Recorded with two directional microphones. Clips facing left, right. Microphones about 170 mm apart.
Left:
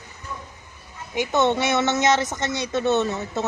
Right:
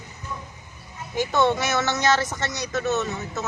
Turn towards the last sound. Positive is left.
turn(degrees=30)  # may be behind; listen again after turning